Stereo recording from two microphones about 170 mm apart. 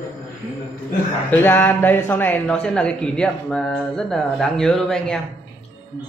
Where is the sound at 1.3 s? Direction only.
15° left (ahead or behind).